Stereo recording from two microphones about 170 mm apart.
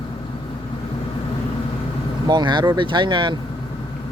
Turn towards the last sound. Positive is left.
turn(degrees=-30)  # may be behind; listen again after turning